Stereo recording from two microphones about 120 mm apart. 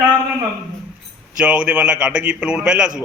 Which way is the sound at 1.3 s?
10° right (ahead or behind).